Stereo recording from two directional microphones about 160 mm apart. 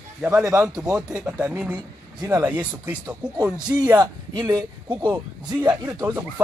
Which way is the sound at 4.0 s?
25° right (ahead or behind).